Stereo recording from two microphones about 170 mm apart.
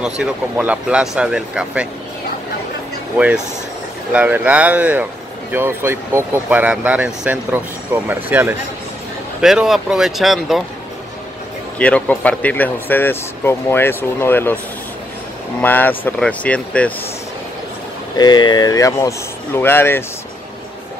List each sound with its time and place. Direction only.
0.0 s speech: 5° right (ahead or behind)
4.1 s speech: 10° right (ahead or behind)
11.8 s speech: 10° left (ahead or behind)
15.6 s speech: 10° left (ahead or behind)
18.1 s speech: 25° left (ahead or behind)